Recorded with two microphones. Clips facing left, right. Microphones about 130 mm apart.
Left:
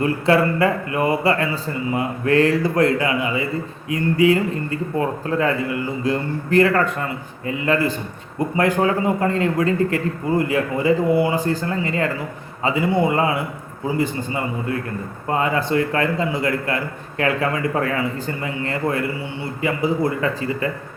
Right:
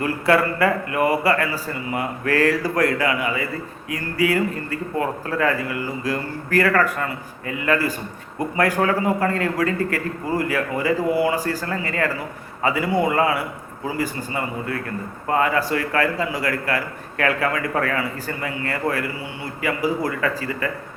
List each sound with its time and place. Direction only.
0.0 s a man's voice: 25° left (ahead or behind)